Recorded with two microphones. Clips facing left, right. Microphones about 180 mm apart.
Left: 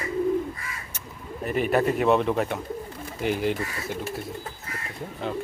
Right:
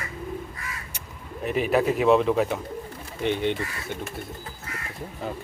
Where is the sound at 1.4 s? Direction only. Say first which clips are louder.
Even; centre (ahead or behind).